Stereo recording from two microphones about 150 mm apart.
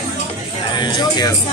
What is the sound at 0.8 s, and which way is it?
Speech, 30° left (ahead or behind).